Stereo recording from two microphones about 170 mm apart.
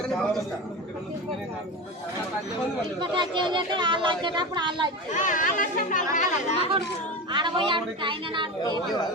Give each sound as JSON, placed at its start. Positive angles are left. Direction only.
{"t": 3.0, "sound": "speech", "side_deg": -30}
{"t": 5.1, "sound": "speech", "side_deg": 50}
{"t": 7.3, "sound": "speech", "side_deg": -25}